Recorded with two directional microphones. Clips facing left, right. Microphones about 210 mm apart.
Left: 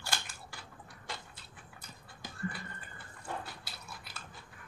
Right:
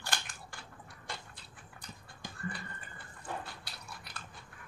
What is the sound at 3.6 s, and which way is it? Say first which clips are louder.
Biting: even; 5° left (ahead or behind).